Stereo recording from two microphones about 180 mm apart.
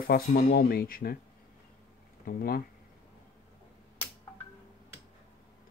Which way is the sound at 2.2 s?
55° left (ahead or behind).